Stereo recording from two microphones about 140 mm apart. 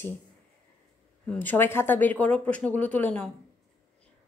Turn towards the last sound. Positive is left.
turn(degrees=10)  # may be behind; listen again after turning